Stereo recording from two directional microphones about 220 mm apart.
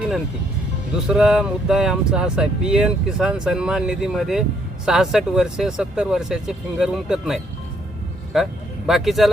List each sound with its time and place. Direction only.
1.0 s speech: 5° right (ahead or behind)